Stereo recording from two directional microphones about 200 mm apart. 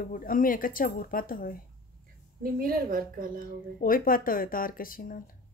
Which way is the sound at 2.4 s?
45° right (ahead or behind).